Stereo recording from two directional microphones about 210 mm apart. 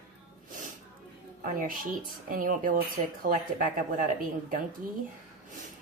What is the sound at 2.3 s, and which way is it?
A woman's voice, 40° right (ahead or behind).